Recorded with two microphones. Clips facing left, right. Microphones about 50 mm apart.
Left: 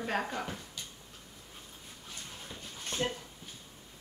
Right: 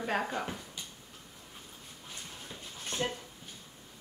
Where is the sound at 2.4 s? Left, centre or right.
Centre.